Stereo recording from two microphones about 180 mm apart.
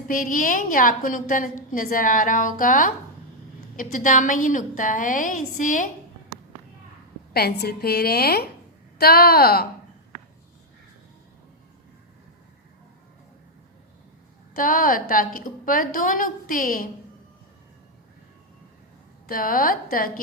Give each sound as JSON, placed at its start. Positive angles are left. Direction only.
{"t": 0.1, "sound": "a woman's voice", "side_deg": 50}
{"t": 7.3, "sound": "a woman's voice", "side_deg": 65}
{"t": 14.5, "sound": "a woman's voice", "side_deg": 50}
{"t": 19.3, "sound": "a woman's voice", "side_deg": 50}